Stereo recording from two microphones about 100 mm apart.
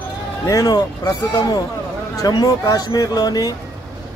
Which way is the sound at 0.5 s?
35° left (ahead or behind).